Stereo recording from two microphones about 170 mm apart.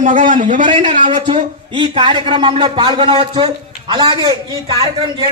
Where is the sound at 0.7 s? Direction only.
30° right (ahead or behind).